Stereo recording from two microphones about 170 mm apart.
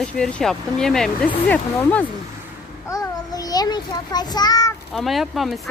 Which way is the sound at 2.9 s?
20° left (ahead or behind).